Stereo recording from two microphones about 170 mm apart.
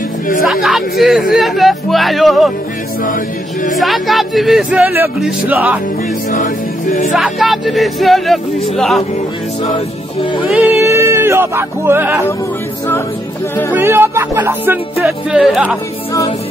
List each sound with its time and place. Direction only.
0.5 s speech: centre (ahead or behind)
3.7 s speech: centre (ahead or behind)
6.3 s music: 50° left (ahead or behind)
7.2 s speech: centre (ahead or behind)
10.8 s music: 15° right (ahead or behind)
13.7 s speech: 15° right (ahead or behind)
16.1 s music: 20° left (ahead or behind)